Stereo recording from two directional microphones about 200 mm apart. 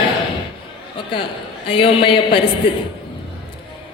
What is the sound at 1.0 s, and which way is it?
A man's voice, 25° left (ahead or behind).